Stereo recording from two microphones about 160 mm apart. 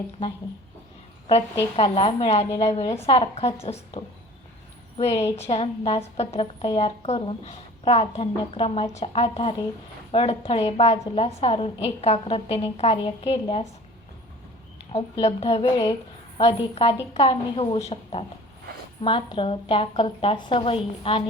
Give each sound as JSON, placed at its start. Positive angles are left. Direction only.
{"t": 1.3, "sound": "a woman's voice", "side_deg": 35}
{"t": 8.3, "sound": "a woman's voice", "side_deg": 25}
{"t": 8.6, "sound": "a woman's voice", "side_deg": 40}
{"t": 14.9, "sound": "a woman's voice", "side_deg": 40}